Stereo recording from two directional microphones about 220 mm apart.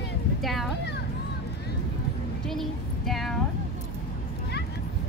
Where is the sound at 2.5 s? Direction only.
Centre (ahead or behind).